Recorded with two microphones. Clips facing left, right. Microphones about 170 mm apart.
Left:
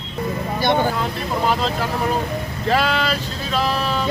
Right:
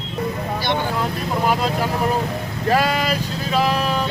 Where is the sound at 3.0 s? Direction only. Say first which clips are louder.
Right 1 dB; 10° right (ahead or behind).